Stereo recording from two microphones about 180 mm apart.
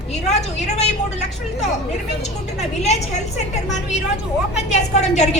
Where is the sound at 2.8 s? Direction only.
40° left (ahead or behind).